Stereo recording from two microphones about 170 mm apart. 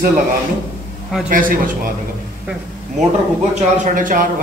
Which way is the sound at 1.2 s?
55° right (ahead or behind).